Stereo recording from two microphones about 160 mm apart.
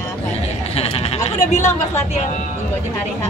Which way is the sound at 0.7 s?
40° left (ahead or behind).